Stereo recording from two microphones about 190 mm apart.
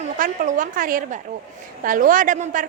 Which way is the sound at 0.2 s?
45° right (ahead or behind).